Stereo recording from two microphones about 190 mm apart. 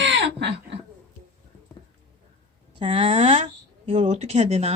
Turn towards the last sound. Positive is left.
turn(degrees=-35)  # may be behind; listen again after turning